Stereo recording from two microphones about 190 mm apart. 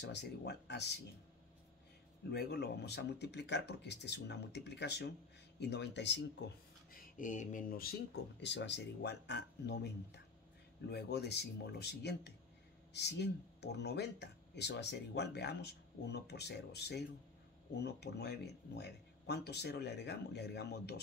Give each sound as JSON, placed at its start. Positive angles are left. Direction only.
{"t": 0.0, "sound": "speech", "side_deg": 60}
{"t": 2.3, "sound": "speech", "side_deg": 60}
{"t": 6.9, "sound": "speech", "side_deg": 45}